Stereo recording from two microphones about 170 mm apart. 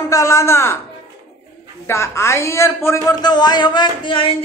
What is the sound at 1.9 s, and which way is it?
A man's voice, 15° left (ahead or behind).